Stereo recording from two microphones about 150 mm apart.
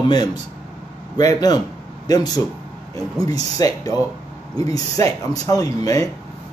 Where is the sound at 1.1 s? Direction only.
25° left (ahead or behind).